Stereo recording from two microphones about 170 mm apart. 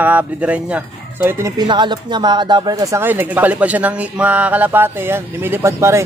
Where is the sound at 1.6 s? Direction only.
25° right (ahead or behind).